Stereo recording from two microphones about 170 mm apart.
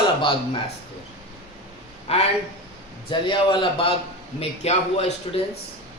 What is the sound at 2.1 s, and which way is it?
A man's voice, 35° left (ahead or behind).